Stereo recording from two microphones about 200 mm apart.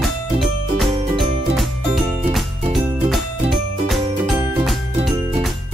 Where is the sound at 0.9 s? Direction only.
25° right (ahead or behind).